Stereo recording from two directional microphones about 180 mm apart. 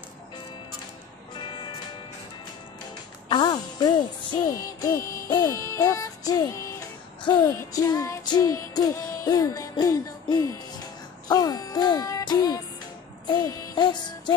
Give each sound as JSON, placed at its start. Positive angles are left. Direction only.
{"t": 3.3, "sound": "speech", "side_deg": 25}
{"t": 7.2, "sound": "music", "side_deg": 15}